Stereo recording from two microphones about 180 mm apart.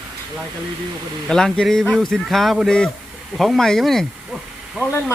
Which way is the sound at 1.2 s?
5° left (ahead or behind).